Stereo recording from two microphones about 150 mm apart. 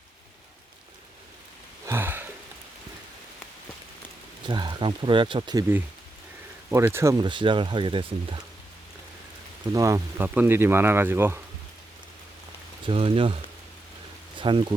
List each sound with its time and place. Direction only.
1.9 s a sound: 15° right (ahead or behind)
4.4 s speech: 30° right (ahead or behind)
6.7 s speech: 15° right (ahead or behind)
7.3 s speech: 35° right (ahead or behind)
9.7 s speech: 20° right (ahead or behind)
12.8 s speech: 35° right (ahead or behind)
14.3 s speech: 35° right (ahead or behind)